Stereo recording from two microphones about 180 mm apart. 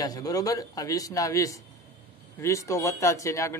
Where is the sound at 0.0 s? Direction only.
20° left (ahead or behind).